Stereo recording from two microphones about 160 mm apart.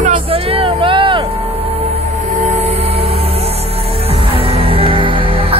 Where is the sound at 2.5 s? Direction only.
45° right (ahead or behind).